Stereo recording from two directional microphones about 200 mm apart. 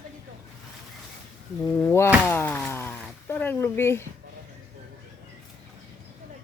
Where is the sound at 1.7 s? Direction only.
10° left (ahead or behind).